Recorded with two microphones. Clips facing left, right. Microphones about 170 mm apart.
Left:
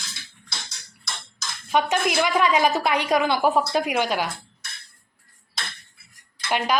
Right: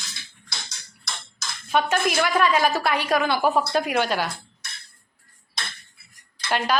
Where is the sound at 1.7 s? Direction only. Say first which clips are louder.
Even; 15° left (ahead or behind).